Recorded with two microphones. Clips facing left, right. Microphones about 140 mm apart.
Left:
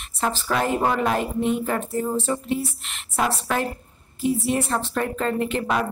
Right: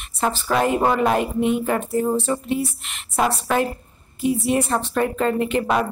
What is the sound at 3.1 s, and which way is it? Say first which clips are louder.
Speech: right 4 dB; 15° right (ahead or behind).